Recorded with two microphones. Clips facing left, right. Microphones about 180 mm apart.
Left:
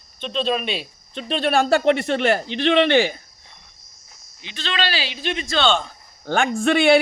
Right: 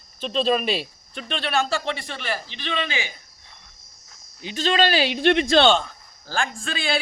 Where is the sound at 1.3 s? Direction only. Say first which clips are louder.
Left 6 dB; 50° left (ahead or behind); by 3.1 s 70° left (ahead or behind).